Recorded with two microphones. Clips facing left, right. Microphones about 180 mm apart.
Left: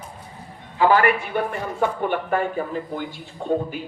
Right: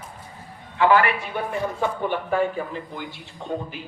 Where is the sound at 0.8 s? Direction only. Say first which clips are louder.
Left 1 dB; 40° left (ahead or behind).